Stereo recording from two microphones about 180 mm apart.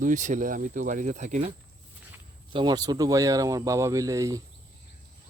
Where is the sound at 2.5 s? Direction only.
25° right (ahead or behind).